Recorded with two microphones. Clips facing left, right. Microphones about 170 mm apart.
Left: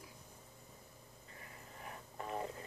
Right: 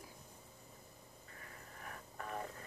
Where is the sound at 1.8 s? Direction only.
20° left (ahead or behind).